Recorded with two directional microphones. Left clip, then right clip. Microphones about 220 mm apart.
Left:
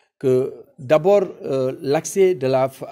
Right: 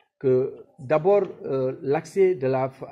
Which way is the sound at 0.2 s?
40° left (ahead or behind).